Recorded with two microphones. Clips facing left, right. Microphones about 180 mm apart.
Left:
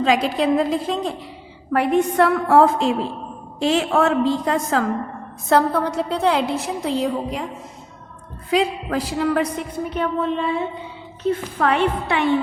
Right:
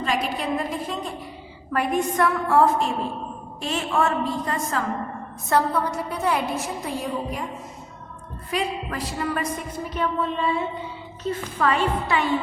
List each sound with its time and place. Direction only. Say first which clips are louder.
0.0 s a woman's voice: left 7 dB; 90° left
1.7 s a woman's voice: left 5 dB; 65° left (ahead or behind); by 7.4 s 90° left
8.4 s a woman's voice: left 7 dB; 90° left; by 12.3 s 65° left (ahead or behind)